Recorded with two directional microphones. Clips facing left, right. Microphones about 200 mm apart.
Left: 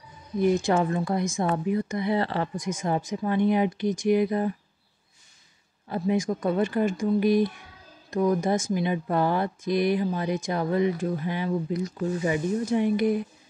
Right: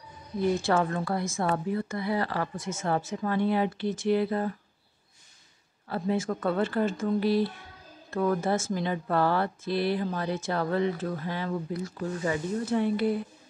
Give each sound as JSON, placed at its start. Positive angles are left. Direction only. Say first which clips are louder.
{"t": 0.4, "sound": "speech", "louder": "left 3 dB", "side_deg": 15}
{"t": 2.5, "sound": "speech", "louder": "left 2 dB", "side_deg": 15}
{"t": 5.9, "sound": "speech", "louder": "left 3 dB", "side_deg": 15}